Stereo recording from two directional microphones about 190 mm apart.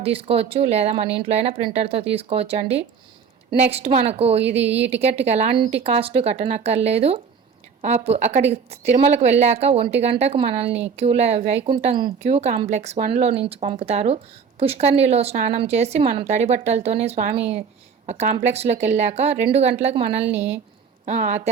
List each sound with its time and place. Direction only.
0.0 s a woman's voice: 30° right (ahead or behind)
20.2 s speech: 10° right (ahead or behind)
21.0 s a woman's voice: 35° right (ahead or behind)